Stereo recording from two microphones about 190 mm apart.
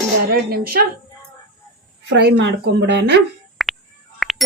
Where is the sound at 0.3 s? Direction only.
55° right (ahead or behind).